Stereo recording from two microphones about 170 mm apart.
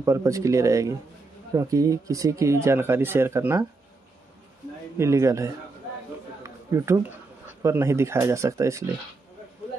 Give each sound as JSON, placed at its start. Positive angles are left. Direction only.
{"t": 0.0, "sound": "speech", "side_deg": -15}
{"t": 4.9, "sound": "speech", "side_deg": -15}
{"t": 6.4, "sound": "a sound", "side_deg": -15}
{"t": 7.6, "sound": "speech", "side_deg": -15}